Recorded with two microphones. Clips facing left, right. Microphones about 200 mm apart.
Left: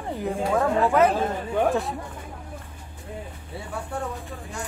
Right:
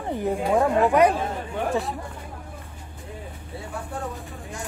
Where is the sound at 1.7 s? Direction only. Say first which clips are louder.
Left 1 dB; centre (ahead or behind).